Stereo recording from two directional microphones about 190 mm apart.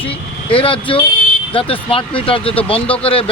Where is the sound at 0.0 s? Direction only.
30° left (ahead or behind).